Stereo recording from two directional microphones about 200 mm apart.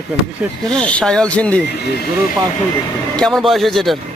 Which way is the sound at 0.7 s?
5° left (ahead or behind).